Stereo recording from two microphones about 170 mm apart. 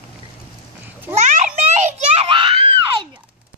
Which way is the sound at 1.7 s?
40° right (ahead or behind).